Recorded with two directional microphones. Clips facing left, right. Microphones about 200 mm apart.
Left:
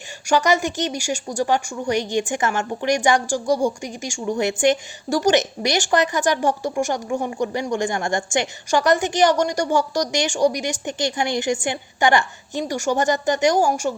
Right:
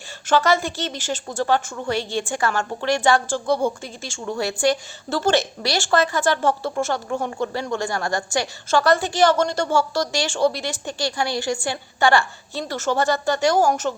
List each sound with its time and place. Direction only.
0.3 s a woman's voice: 15° left (ahead or behind)